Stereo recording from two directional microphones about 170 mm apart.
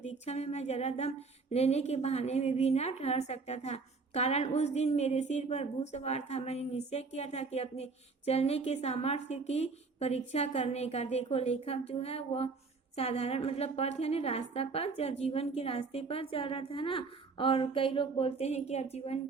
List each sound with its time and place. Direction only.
0.0 s speech: 40° left (ahead or behind)